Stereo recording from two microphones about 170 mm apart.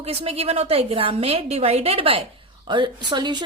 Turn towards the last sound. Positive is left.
turn(degrees=-25)  # may be behind; listen again after turning